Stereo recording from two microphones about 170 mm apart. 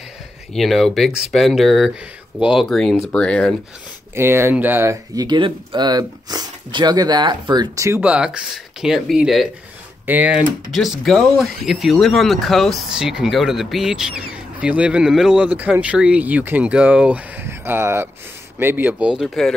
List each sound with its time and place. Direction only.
0.6 s speech: centre (ahead or behind)
4.1 s speech: 15° right (ahead or behind)
8.0 s speech: 5° right (ahead or behind)